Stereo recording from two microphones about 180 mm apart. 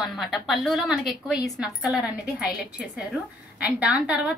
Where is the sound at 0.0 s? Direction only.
Centre (ahead or behind).